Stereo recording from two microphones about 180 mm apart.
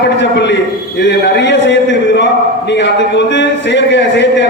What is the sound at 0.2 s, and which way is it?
Speech, 75° left (ahead or behind).